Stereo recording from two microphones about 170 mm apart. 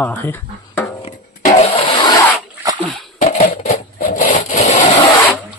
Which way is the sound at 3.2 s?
50° left (ahead or behind).